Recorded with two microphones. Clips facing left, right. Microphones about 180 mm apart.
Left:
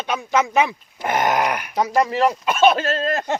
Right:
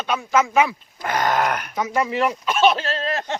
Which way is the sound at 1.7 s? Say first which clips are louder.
Left 4 dB; 35° left (ahead or behind).